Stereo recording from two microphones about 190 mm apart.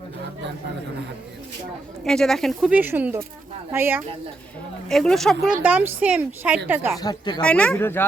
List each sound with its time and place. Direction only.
2.0 s speech: 5° left (ahead or behind)
4.9 s speech: centre (ahead or behind)
7.0 s speech: 20° left (ahead or behind)
7.4 s speech: 5° left (ahead or behind)